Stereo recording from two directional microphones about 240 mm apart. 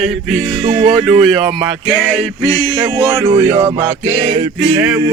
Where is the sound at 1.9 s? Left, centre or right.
Centre.